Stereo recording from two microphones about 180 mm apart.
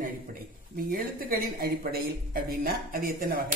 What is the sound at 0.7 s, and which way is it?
Speech, 50° right (ahead or behind).